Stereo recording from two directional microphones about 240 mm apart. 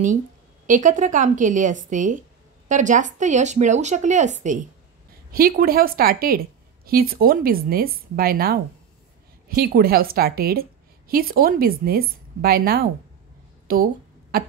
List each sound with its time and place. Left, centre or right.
0.7 s a woman's voice: right